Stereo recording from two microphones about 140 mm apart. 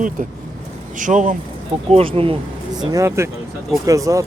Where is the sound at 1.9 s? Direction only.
40° right (ahead or behind).